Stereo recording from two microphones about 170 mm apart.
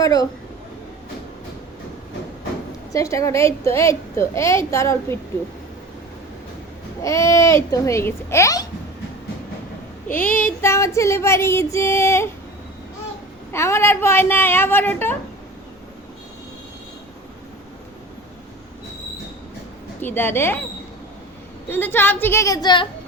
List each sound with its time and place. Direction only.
0.0 s speech: 20° left (ahead or behind)
2.9 s female singing: 20° left (ahead or behind)
7.0 s female singing: 15° left (ahead or behind)
10.1 s female singing: 10° left (ahead or behind)
13.5 s female singing: 15° left (ahead or behind)
20.0 s female singing: 10° left (ahead or behind)
21.7 s female singing: 10° left (ahead or behind)